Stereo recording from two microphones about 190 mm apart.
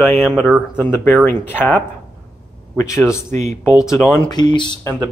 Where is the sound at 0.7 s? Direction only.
10° left (ahead or behind).